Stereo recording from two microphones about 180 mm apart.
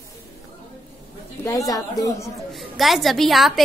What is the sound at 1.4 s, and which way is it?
Speech, 20° left (ahead or behind).